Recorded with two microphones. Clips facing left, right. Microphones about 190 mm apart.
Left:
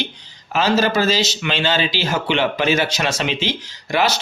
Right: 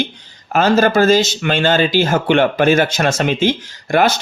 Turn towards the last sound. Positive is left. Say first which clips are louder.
# right 5 dB
turn(degrees=-50)  # may be behind; listen again after turning